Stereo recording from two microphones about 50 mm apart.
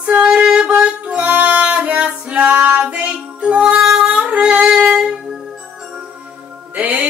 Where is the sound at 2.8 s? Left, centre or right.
Right.